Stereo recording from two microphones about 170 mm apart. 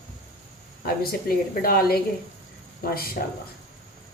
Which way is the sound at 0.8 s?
65° left (ahead or behind).